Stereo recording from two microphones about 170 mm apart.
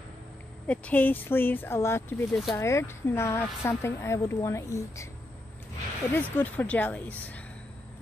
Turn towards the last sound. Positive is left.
turn(degrees=10)  # may be behind; listen again after turning